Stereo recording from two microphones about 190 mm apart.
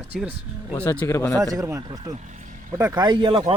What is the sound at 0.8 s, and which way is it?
Speech, 10° left (ahead or behind).